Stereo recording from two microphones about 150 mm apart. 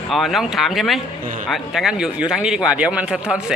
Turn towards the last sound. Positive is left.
turn(degrees=-5)  # may be behind; listen again after turning